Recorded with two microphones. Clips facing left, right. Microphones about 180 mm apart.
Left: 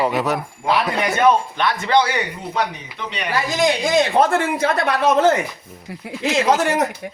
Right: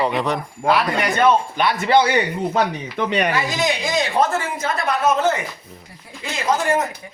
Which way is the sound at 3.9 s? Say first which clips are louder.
Left 3 dB; 55° left (ahead or behind).